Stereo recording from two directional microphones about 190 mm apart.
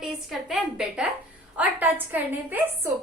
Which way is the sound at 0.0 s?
Centre (ahead or behind).